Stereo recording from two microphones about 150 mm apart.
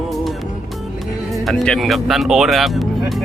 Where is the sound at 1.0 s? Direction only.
Centre (ahead or behind).